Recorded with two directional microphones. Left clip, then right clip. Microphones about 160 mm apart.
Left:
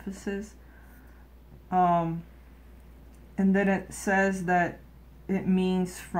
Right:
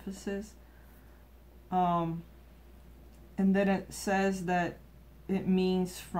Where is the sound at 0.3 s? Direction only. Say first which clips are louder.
Left 3 dB; 15° left (ahead or behind).